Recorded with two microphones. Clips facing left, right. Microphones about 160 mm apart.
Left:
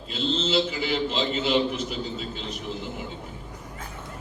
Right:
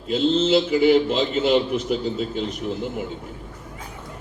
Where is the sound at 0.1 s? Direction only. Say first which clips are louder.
Right 8 dB; 50° right (ahead or behind).